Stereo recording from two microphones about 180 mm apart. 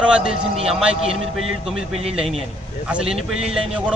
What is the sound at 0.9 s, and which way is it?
Speech, 35° right (ahead or behind).